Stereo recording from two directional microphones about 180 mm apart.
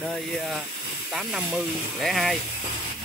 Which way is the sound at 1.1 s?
Centre (ahead or behind).